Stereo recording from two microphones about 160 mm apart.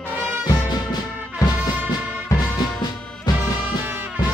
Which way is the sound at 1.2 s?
10° right (ahead or behind).